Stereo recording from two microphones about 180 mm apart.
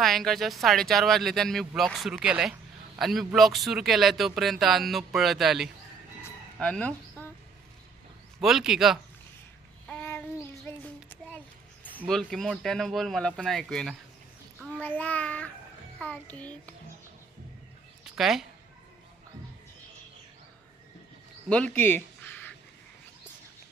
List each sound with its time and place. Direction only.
0.0 s speech: centre (ahead or behind)
8.4 s speech: centre (ahead or behind)
9.8 s child singing: 10° left (ahead or behind)
10.7 s a sound: 10° left (ahead or behind)
12.1 s speech: centre (ahead or behind)
14.7 s child singing: 10° left (ahead or behind)
18.0 s a woman's voice: centre (ahead or behind)
21.5 s a sound: 5° left (ahead or behind)